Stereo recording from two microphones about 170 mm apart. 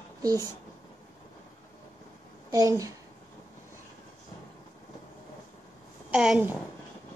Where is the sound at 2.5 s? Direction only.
20° right (ahead or behind).